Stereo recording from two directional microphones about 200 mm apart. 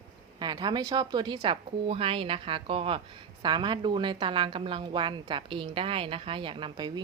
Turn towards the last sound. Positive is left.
turn(degrees=-20)  # may be behind; listen again after turning